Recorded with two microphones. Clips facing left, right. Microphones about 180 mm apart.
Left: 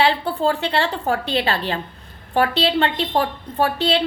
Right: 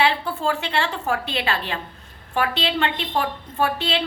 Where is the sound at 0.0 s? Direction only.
35° left (ahead or behind).